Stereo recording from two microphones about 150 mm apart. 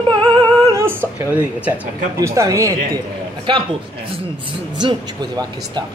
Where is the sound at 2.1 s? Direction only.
20° right (ahead or behind).